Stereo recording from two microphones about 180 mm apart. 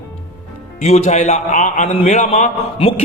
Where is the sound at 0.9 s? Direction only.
35° left (ahead or behind).